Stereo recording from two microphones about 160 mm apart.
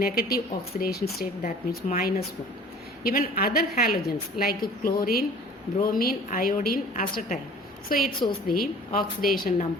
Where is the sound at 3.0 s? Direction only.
65° left (ahead or behind).